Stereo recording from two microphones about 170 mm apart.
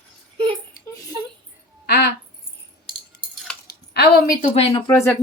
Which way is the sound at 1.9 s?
75° left (ahead or behind).